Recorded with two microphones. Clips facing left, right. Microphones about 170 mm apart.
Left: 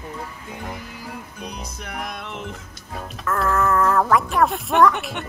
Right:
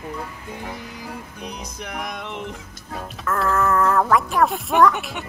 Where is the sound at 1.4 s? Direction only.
Centre (ahead or behind).